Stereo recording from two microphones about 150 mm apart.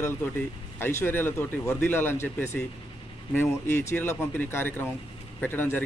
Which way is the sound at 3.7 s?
15° left (ahead or behind).